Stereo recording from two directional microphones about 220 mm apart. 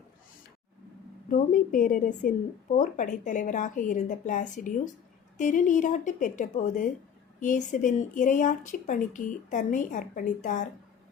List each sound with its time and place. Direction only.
1.3 s a woman's voice: 35° left (ahead or behind)